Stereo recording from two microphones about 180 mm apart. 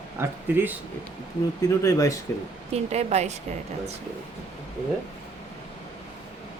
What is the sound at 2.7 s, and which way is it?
Speech, 35° right (ahead or behind).